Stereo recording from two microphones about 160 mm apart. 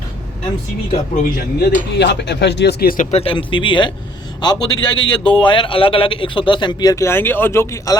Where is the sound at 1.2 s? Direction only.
75° left (ahead or behind).